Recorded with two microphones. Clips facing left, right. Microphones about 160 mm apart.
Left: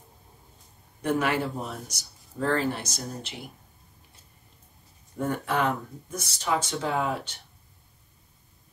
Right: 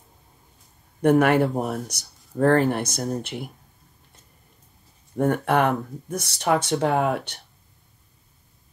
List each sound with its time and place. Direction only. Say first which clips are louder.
1.0 s speech: right 9 dB; 55° right (ahead or behind)
5.1 s speech: right 7 dB; 60° right (ahead or behind)